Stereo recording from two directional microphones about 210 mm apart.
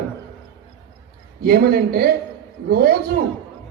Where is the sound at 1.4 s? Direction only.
45° right (ahead or behind).